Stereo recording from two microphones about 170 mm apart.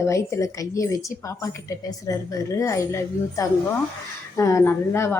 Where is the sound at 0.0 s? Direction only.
15° left (ahead or behind).